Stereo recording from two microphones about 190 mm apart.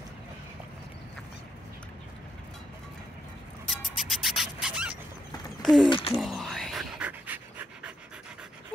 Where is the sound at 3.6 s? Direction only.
Centre (ahead or behind).